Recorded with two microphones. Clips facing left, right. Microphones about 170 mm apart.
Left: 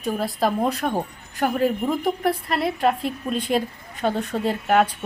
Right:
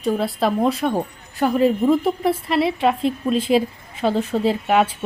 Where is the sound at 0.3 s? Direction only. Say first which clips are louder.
Right 3 dB; centre (ahead or behind).